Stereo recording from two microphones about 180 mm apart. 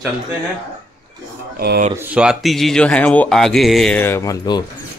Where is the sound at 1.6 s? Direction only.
60° right (ahead or behind).